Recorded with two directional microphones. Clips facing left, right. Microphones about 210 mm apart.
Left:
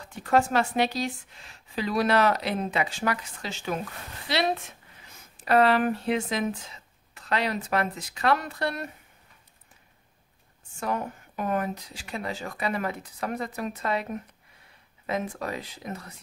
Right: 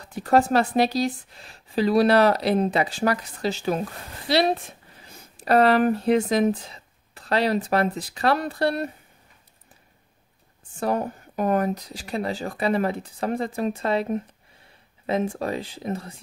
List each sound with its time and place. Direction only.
0.0 s speech: 35° right (ahead or behind)
10.8 s speech: 35° right (ahead or behind)